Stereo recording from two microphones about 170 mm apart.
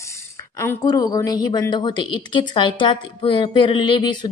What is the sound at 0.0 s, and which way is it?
A woman's voice, 15° left (ahead or behind).